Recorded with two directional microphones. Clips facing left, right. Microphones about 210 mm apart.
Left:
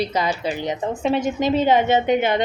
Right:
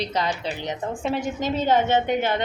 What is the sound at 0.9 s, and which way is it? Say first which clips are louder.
A woman's voice: left 6 dB; 20° left (ahead or behind).